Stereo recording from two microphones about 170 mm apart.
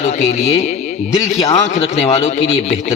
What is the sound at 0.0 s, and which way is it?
Speech, 35° left (ahead or behind).